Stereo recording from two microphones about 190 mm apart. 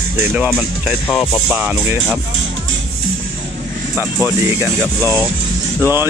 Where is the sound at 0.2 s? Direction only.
10° right (ahead or behind).